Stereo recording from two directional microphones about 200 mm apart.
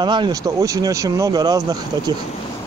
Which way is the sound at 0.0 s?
20° right (ahead or behind).